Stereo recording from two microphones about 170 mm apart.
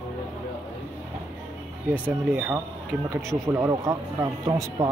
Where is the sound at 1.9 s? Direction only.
10° right (ahead or behind).